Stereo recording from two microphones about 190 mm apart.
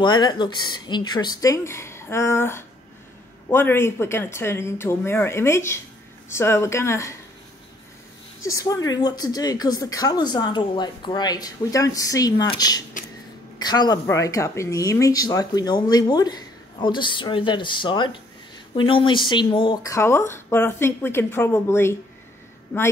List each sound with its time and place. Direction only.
0.0 s speech: 20° left (ahead or behind)
8.4 s speech: 15° left (ahead or behind)